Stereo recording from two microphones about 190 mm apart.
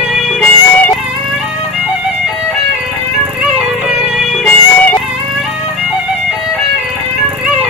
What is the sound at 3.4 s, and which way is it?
Music, 5° right (ahead or behind).